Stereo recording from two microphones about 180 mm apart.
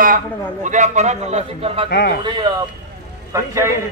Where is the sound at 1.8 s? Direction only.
65° left (ahead or behind).